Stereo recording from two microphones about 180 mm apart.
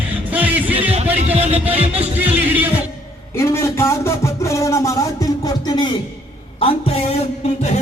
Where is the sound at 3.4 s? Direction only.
15° left (ahead or behind).